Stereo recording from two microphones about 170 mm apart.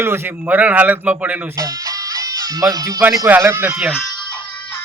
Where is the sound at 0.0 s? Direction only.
15° right (ahead or behind).